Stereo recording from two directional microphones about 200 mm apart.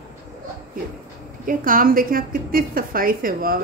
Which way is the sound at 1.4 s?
45° right (ahead or behind).